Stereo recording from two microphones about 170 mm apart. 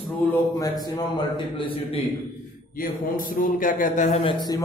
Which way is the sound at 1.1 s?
30° left (ahead or behind).